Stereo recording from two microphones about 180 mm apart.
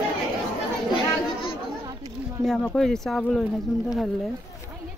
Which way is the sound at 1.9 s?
20° right (ahead or behind).